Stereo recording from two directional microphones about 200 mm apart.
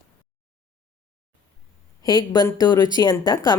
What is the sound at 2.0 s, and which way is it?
Speech, 20° left (ahead or behind).